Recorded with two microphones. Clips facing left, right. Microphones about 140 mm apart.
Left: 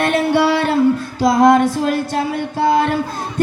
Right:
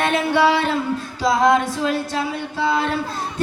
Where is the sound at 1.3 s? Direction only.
45° left (ahead or behind).